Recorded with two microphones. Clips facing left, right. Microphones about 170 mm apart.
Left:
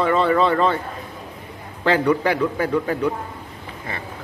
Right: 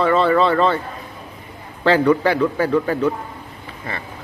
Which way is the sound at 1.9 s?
10° left (ahead or behind).